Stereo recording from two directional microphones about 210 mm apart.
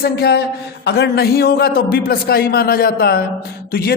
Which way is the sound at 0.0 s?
50° left (ahead or behind).